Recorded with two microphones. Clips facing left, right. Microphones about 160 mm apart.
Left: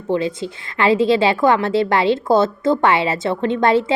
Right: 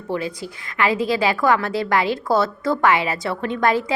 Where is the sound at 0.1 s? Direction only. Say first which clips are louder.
Left 6 dB; 25° left (ahead or behind).